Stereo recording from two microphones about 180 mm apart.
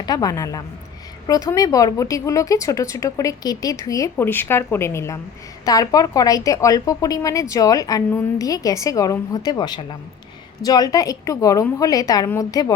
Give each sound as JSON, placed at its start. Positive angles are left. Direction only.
{"t": 0.0, "sound": "a woman's voice", "side_deg": 20}